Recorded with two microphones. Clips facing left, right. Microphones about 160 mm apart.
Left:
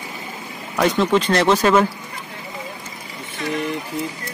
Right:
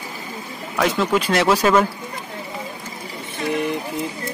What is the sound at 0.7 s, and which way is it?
Speech, 5° right (ahead or behind).